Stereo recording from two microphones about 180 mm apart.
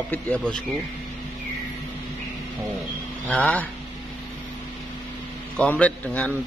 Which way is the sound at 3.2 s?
10° left (ahead or behind).